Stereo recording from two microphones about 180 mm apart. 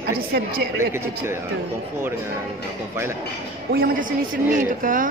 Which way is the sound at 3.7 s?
55° right (ahead or behind).